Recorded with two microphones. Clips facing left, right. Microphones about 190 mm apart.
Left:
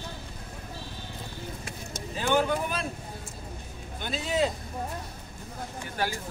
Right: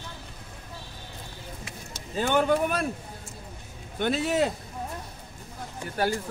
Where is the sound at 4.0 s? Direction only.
65° right (ahead or behind).